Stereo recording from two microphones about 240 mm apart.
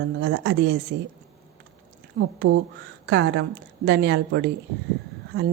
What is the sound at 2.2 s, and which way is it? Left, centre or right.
A woman's voice, right.